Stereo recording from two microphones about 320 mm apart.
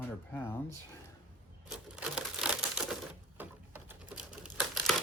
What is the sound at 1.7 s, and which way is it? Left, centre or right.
Crumpling, centre.